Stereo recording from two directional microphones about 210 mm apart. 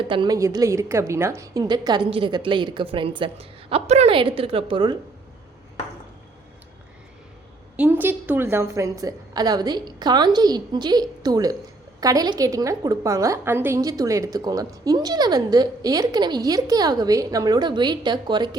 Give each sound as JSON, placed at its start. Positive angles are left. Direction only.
{"t": 0.1, "sound": "a woman's voice", "side_deg": -20}
{"t": 7.8, "sound": "a woman's voice", "side_deg": -10}